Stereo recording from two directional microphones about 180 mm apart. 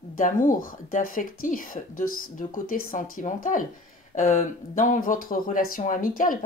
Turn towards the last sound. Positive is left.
turn(degrees=50)  # may be behind; listen again after turning